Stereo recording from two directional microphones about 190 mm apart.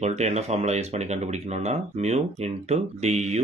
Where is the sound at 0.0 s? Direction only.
35° right (ahead or behind).